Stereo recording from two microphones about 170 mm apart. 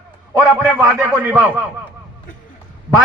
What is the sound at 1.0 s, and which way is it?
Speech, 10° right (ahead or behind).